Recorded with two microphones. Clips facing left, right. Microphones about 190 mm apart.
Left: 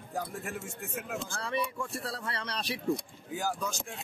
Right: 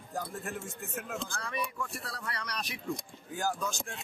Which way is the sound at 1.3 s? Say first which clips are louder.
Left 6 dB; 30° left (ahead or behind).